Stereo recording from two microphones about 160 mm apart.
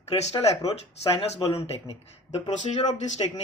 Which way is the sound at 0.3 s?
40° left (ahead or behind).